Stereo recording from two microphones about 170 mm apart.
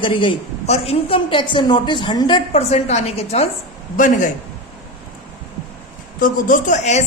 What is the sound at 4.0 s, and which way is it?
Speech, 50° left (ahead or behind).